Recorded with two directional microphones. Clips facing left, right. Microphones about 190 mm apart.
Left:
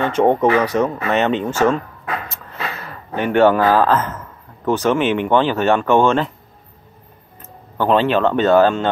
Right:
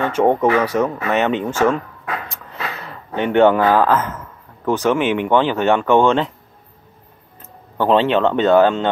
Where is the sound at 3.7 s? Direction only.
15° right (ahead or behind).